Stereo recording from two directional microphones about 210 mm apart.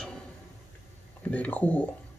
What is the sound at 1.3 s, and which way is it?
Speech, 5° left (ahead or behind).